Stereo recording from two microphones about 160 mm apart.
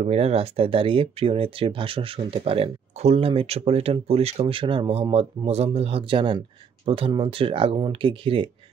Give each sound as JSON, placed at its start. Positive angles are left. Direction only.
{"t": 0.0, "sound": "speech", "side_deg": -40}